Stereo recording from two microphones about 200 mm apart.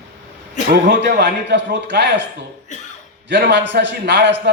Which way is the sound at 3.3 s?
60° right (ahead or behind).